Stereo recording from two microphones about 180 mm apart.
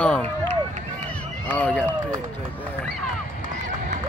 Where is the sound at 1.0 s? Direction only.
10° left (ahead or behind).